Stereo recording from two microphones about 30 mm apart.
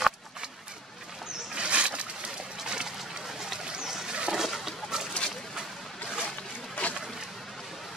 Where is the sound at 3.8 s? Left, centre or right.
Centre.